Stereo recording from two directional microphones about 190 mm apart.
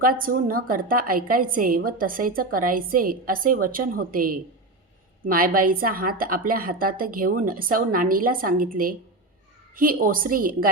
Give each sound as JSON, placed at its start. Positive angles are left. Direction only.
{"t": 0.0, "sound": "a woman's voice", "side_deg": -50}